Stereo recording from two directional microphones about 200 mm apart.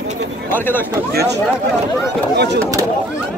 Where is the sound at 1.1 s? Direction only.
55° right (ahead or behind).